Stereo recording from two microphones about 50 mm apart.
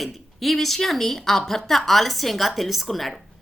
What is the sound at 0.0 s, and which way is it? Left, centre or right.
A woman's voice, centre.